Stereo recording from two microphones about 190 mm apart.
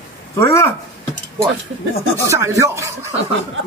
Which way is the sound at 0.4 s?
15° left (ahead or behind).